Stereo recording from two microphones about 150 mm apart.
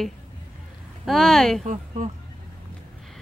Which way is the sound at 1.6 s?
55° right (ahead or behind).